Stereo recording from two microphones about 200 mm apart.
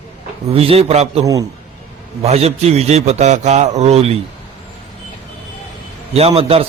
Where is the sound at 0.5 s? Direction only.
30° right (ahead or behind).